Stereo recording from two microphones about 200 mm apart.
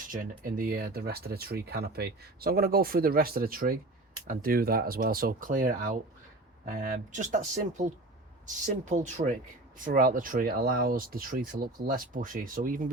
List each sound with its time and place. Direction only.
0.1 s speech: 45° right (ahead or behind)